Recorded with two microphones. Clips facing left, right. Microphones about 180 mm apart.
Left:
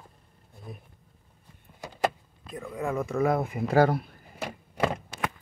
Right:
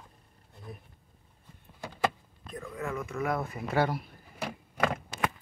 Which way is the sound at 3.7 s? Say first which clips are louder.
Left 6 dB; 45° left (ahead or behind).